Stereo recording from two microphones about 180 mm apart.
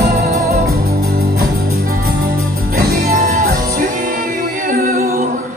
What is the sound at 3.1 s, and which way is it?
Music, 50° right (ahead or behind).